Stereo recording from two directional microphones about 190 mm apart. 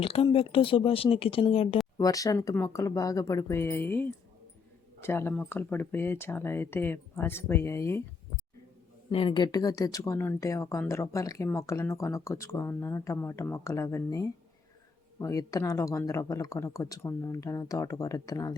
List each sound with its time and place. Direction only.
0.0 s speech: 30° left (ahead or behind); by 8.0 s 15° left (ahead or behind)
9.0 s speech: 25° left (ahead or behind)